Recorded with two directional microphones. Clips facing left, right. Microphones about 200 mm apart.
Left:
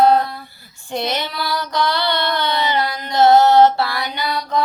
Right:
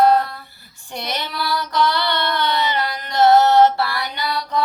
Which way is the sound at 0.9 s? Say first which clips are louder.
Left 5 dB; 20° left (ahead or behind).